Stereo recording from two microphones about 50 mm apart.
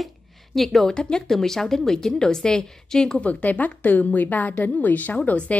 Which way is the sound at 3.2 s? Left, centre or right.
Left.